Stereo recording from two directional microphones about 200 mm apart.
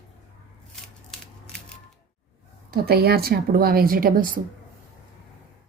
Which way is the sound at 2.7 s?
50° right (ahead or behind).